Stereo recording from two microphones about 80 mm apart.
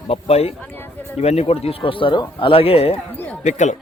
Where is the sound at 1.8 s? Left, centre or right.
Left.